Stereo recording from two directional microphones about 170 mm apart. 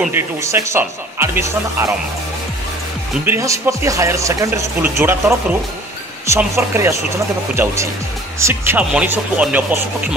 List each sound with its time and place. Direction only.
0.0 s speech: 15° right (ahead or behind)
3.3 s speech: 15° right (ahead or behind)